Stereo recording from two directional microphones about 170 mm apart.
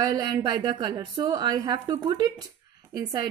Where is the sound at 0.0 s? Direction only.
25° right (ahead or behind).